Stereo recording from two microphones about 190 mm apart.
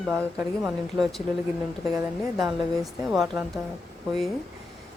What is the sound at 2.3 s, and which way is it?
A woman's voice, centre (ahead or behind).